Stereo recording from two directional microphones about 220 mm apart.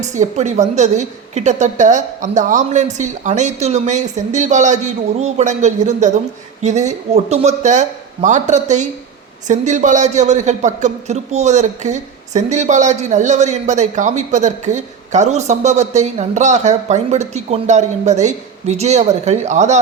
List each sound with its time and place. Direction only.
0.0 s speech: 30° right (ahead or behind)